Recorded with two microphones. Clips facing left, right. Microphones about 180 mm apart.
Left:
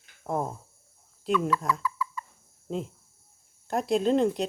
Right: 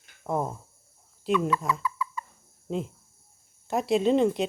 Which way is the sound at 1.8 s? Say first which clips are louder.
Even; 20° right (ahead or behind).